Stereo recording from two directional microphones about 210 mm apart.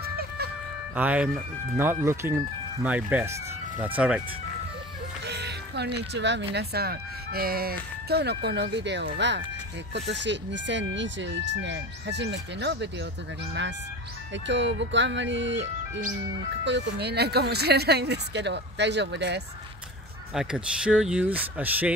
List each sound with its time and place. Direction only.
0.9 s speech: 5° right (ahead or behind)
5.2 s music: 55° right (ahead or behind)
6.5 s speech: 50° right (ahead or behind)
14.3 s speech: 60° right (ahead or behind)
16.6 s speech: 55° right (ahead or behind)
20.3 s speech: 5° right (ahead or behind)